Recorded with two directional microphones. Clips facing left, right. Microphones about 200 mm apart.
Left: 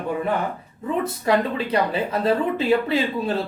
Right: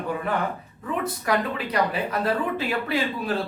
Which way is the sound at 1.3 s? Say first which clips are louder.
Left 5 dB; 25° left (ahead or behind).